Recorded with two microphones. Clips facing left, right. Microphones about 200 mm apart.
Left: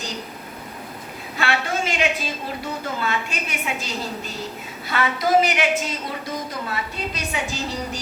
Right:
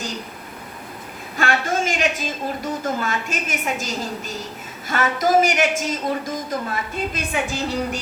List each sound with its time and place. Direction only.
1.4 s a woman's voice: 45° right (ahead or behind)